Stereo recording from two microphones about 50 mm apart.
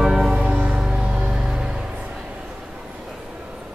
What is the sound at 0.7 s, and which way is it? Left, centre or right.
Music, centre.